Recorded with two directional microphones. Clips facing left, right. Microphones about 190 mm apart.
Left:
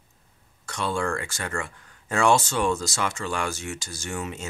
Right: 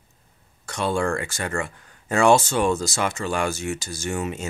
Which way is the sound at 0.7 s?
15° right (ahead or behind).